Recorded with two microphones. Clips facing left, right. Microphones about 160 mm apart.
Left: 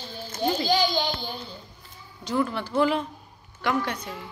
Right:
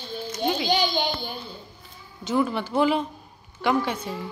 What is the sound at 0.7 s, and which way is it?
Speech, 20° right (ahead or behind).